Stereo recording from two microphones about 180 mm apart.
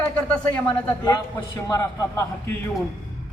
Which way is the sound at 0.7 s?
25° left (ahead or behind).